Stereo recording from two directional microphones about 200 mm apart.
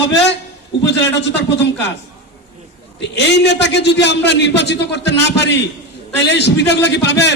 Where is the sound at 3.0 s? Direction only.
60° left (ahead or behind).